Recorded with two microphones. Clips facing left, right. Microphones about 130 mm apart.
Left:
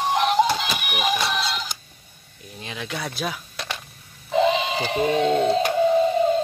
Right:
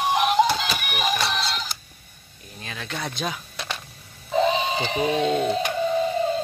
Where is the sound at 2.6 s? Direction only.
20° left (ahead or behind); by 3.8 s centre (ahead or behind).